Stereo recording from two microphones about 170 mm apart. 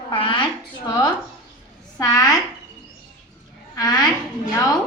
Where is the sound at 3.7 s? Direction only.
20° left (ahead or behind).